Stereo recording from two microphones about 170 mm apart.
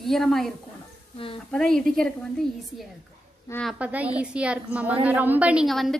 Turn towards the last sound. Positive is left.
turn(degrees=0)  # may be behind; listen again after turning